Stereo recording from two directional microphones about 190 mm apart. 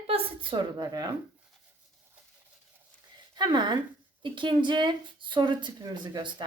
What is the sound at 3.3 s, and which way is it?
Speech, 25° right (ahead or behind).